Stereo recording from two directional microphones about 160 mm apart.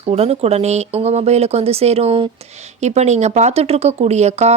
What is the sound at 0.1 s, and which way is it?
Speech, 40° right (ahead or behind).